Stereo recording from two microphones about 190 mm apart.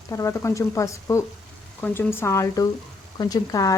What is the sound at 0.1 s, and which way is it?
Speech, 15° left (ahead or behind).